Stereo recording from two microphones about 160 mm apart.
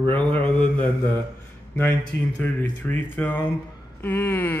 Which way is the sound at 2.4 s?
10° left (ahead or behind).